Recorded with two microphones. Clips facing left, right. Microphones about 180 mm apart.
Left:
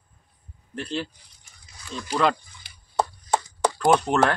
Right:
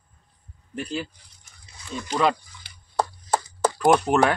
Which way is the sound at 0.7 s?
5° right (ahead or behind).